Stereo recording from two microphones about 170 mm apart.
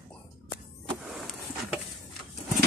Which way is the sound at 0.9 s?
Centre (ahead or behind).